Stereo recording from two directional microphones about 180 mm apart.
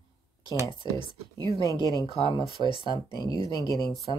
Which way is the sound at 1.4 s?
15° right (ahead or behind).